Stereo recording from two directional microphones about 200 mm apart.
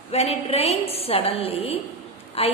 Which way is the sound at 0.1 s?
30° left (ahead or behind).